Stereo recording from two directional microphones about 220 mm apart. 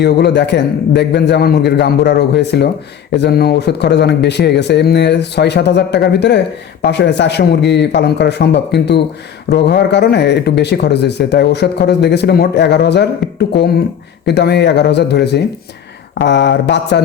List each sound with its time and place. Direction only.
0.0 s speech: 50° left (ahead or behind)
14.3 s speech: 50° left (ahead or behind)